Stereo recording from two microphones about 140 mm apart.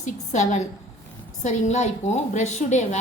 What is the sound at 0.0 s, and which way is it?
A woman's voice, 60° left (ahead or behind).